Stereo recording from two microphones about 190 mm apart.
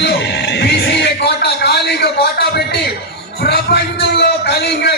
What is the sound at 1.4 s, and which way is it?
Speech, 60° left (ahead or behind).